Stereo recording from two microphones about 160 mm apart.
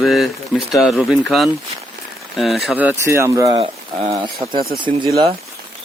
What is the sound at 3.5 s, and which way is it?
Speech, 35° right (ahead or behind).